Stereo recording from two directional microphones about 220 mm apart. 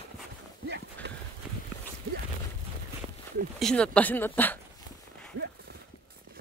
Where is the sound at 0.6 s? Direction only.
50° right (ahead or behind).